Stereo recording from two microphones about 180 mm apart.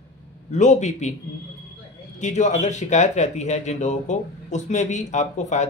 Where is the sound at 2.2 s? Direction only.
40° left (ahead or behind).